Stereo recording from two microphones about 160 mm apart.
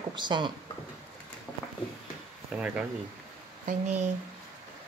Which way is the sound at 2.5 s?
10° right (ahead or behind).